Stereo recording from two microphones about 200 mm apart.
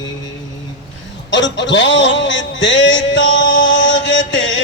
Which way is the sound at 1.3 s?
65° left (ahead or behind).